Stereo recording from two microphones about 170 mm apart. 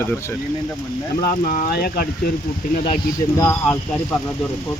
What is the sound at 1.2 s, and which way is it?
Speech, 55° left (ahead or behind).